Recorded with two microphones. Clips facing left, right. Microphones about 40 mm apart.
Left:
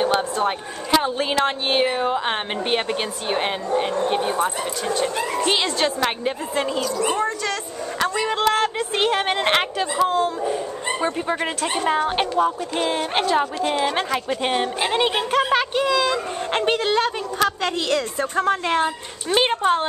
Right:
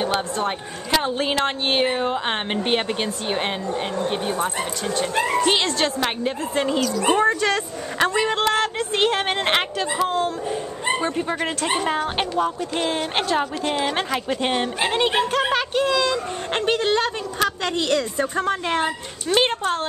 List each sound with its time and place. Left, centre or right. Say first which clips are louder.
0.4 s a woman's voice: left 2 dB; centre
5.1 s speech: right 3 dB; centre
5.4 s a woman's voice: right 1 dB; centre
7.0 s speech: right 6 dB; right
8.5 s a woman's voice: left 1 dB; centre
19.2 s speech: left 1 dB; centre